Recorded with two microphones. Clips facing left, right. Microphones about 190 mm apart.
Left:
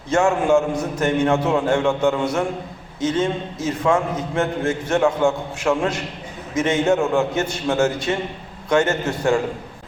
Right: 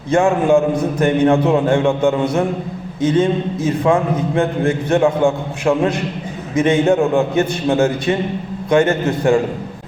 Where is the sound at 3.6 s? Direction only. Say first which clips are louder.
Right 3 dB; 15° right (ahead or behind).